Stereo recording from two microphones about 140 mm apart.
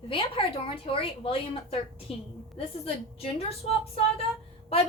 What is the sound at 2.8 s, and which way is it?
Speech, 45° left (ahead or behind).